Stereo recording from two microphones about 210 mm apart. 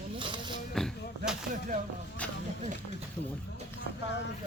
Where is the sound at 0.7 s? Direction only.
Centre (ahead or behind).